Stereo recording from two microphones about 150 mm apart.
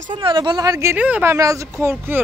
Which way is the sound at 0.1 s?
30° right (ahead or behind).